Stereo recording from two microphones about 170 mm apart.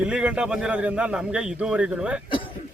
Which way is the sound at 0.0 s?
5° right (ahead or behind).